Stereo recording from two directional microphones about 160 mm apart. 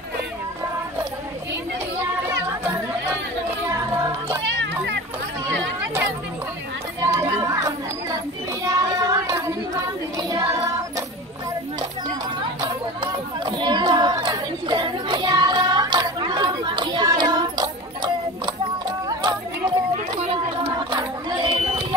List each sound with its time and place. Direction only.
7.2 s chatter: 20° right (ahead or behind)
8.6 s child singing: 20° right (ahead or behind)
10.1 s music: 20° right (ahead or behind)
12.5 s chatter: 30° right (ahead or behind)
20.9 s a sound: 30° right (ahead or behind)